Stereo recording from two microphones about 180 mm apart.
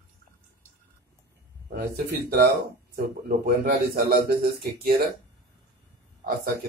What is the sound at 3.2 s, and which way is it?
Speech, 50° right (ahead or behind).